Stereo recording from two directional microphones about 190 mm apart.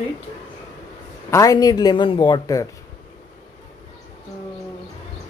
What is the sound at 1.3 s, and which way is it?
A man's voice, 15° left (ahead or behind).